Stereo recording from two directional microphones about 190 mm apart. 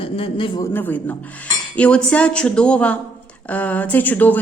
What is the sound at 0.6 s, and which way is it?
A woman's voice, 10° left (ahead or behind).